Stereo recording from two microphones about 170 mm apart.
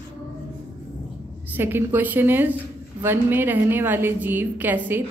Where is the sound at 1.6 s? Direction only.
10° right (ahead or behind).